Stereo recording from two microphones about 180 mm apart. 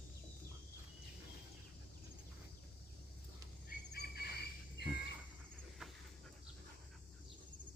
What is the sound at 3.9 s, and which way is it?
Bird, 65° left (ahead or behind).